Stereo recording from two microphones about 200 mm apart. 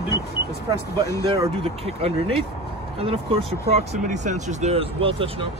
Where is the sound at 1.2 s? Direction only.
25° right (ahead or behind).